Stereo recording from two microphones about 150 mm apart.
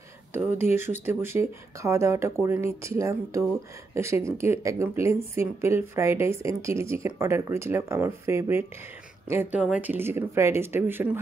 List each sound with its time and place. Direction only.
0.3 s a woman's voice: 15° right (ahead or behind)